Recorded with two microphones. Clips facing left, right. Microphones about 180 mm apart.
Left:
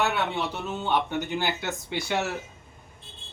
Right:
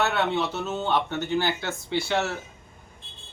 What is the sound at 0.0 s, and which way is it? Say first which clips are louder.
Speech: right 2 dB; 10° left (ahead or behind).